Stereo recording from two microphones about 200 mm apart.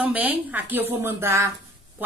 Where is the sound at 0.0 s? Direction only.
5° right (ahead or behind).